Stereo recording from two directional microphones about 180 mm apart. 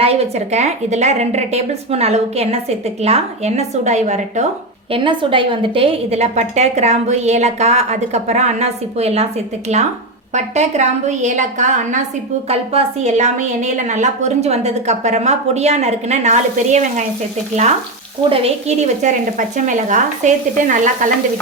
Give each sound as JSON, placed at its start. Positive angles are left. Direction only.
{"t": 0.0, "sound": "a woman's voice", "side_deg": -35}
{"t": 4.9, "sound": "a woman's voice", "side_deg": -30}
{"t": 18.3, "sound": "a woman's voice", "side_deg": -35}